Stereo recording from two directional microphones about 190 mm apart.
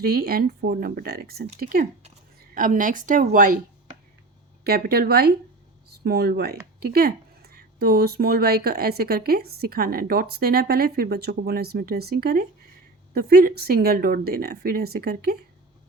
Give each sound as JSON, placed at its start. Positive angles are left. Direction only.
{"t": 0.0, "sound": "a woman's voice", "side_deg": -50}
{"t": 4.6, "sound": "a woman's voice", "side_deg": -55}